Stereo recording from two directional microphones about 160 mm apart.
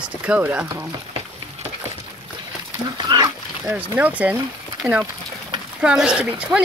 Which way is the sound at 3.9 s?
10° right (ahead or behind).